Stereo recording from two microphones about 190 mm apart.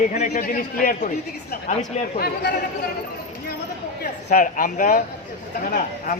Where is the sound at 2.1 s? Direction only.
55° left (ahead or behind).